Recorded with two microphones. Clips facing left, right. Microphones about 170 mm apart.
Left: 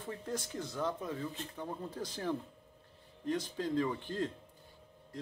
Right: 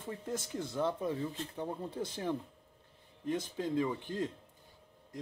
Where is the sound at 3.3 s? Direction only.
25° right (ahead or behind).